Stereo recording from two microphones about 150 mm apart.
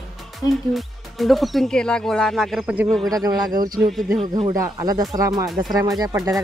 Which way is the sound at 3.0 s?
25° right (ahead or behind).